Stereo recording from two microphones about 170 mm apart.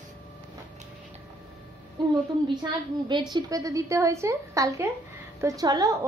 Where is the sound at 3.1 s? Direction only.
25° right (ahead or behind).